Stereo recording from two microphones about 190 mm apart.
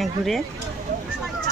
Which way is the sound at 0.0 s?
Centre (ahead or behind).